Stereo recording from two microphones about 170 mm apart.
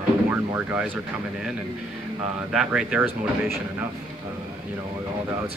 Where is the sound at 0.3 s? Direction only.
10° right (ahead or behind).